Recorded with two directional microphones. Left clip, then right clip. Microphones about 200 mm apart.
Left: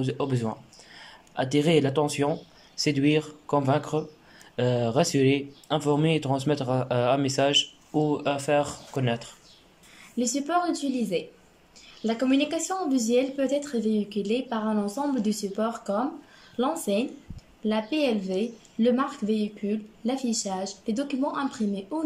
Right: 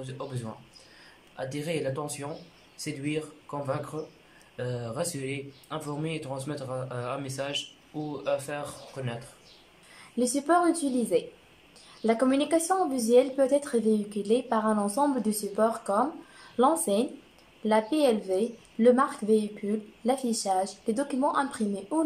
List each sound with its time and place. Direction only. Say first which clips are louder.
0.0 s speech: left 10 dB; 40° left (ahead or behind)
10.1 s a woman's voice: right 1 dB; 10° left (ahead or behind)